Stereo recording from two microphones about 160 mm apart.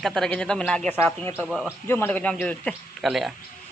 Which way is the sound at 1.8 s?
15° left (ahead or behind).